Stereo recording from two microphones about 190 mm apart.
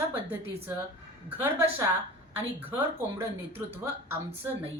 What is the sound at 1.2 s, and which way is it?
A woman's voice, 10° right (ahead or behind).